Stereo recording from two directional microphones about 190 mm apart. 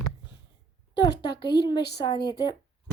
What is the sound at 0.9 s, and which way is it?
Speech, 20° left (ahead or behind).